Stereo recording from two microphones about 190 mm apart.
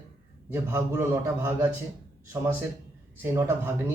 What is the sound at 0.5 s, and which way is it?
Speech, 10° right (ahead or behind).